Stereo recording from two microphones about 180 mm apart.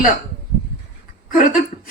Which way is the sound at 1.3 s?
45° left (ahead or behind).